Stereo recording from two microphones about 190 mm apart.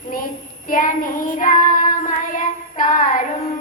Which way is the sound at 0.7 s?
45° left (ahead or behind).